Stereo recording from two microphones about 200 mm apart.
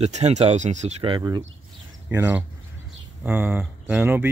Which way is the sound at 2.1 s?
10° right (ahead or behind).